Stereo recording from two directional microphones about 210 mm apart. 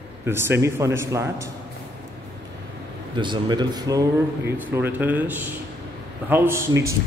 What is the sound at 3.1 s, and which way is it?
A man's voice, 20° right (ahead or behind).